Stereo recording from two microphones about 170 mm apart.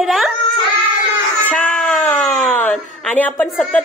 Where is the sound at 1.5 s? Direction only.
10° left (ahead or behind).